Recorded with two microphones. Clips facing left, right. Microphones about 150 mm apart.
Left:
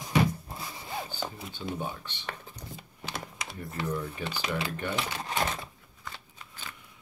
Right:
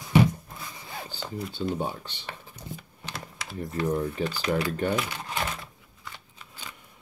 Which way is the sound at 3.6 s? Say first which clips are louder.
Right 6 dB; 30° right (ahead or behind).